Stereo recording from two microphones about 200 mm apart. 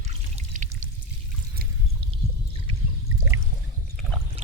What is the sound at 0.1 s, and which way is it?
Pour, 35° right (ahead or behind).